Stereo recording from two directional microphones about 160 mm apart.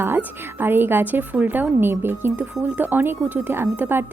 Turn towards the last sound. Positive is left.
turn(degrees=-15)  # may be behind; listen again after turning